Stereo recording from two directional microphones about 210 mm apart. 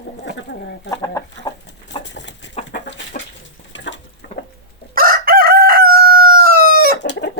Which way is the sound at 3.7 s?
60° left (ahead or behind).